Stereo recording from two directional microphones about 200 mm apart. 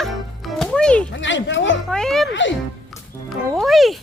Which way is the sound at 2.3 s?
65° left (ahead or behind).